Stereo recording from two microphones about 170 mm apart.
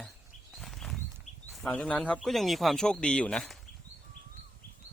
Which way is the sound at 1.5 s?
5° left (ahead or behind).